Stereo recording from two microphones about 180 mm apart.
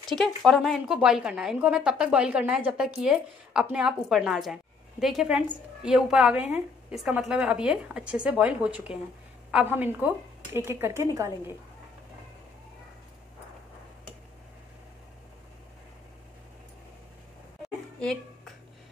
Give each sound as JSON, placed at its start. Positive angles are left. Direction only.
{"t": 0.1, "sound": "a woman's voice", "side_deg": 0}